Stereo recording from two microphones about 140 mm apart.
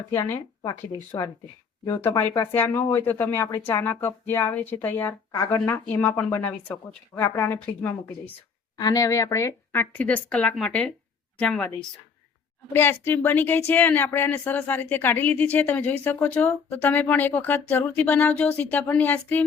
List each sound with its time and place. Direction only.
0.1 s speech: 15° left (ahead or behind)
0.6 s speech: 25° left (ahead or behind)
5.6 s speech: 15° left (ahead or behind)
8.8 s a woman's voice: 25° left (ahead or behind); by 11.7 s 5° left (ahead or behind)
12.7 s speech: 15° left (ahead or behind)